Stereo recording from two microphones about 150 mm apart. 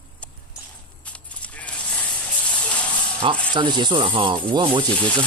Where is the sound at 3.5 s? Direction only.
30° right (ahead or behind).